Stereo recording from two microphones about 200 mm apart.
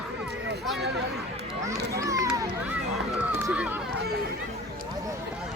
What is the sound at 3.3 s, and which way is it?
Speech, 10° right (ahead or behind).